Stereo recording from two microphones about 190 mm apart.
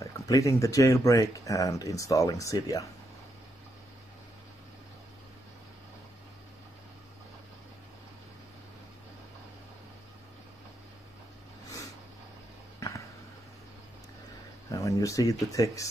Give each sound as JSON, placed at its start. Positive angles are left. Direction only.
{"t": 0.0, "sound": "speech", "side_deg": 15}
{"t": 14.7, "sound": "speech", "side_deg": 15}